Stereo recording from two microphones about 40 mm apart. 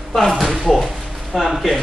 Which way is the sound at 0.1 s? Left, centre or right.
Centre.